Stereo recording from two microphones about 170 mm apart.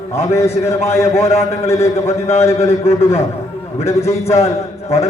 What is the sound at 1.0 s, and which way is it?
A man's voice, 40° left (ahead or behind).